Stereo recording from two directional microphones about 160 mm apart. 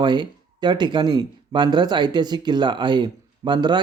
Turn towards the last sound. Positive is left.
turn(degrees=-25)  # may be behind; listen again after turning